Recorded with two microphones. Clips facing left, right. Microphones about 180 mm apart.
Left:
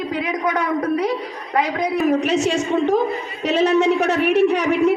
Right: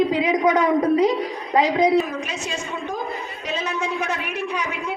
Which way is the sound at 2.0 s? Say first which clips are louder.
Left 12 dB; 75° left (ahead or behind).